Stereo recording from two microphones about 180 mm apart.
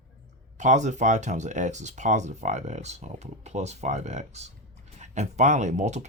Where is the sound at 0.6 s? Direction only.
40° right (ahead or behind).